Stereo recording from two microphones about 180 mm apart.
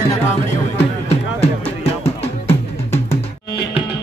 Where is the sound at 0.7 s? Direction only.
35° left (ahead or behind).